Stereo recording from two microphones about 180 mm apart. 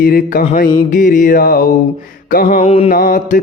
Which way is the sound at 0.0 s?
55° left (ahead or behind).